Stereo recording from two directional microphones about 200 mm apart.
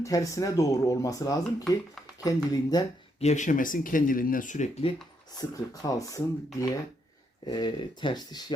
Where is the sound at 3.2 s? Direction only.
35° left (ahead or behind).